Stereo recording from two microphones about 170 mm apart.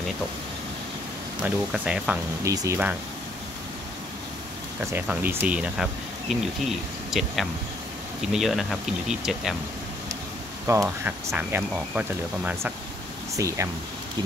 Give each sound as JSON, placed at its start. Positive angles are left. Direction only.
{"t": 1.4, "sound": "speech", "side_deg": -5}
{"t": 2.4, "sound": "speech", "side_deg": -20}
{"t": 4.9, "sound": "speech", "side_deg": -10}
{"t": 7.1, "sound": "speech", "side_deg": 0}
{"t": 10.7, "sound": "speech", "side_deg": -15}
{"t": 13.4, "sound": "speech", "side_deg": -20}